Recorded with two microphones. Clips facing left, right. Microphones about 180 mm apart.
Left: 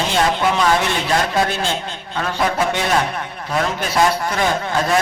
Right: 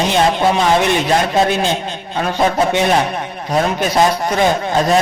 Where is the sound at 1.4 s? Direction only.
15° right (ahead or behind).